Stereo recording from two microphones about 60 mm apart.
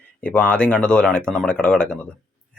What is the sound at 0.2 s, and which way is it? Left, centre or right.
Speech, centre.